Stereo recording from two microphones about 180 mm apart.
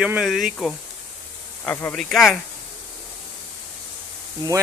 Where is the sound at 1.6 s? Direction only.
10° left (ahead or behind).